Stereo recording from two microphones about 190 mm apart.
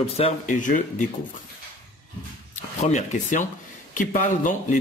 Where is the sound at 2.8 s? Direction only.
40° left (ahead or behind).